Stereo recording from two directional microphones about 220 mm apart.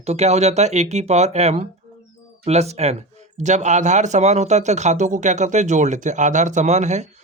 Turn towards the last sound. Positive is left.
turn(degrees=-30)  # may be behind; listen again after turning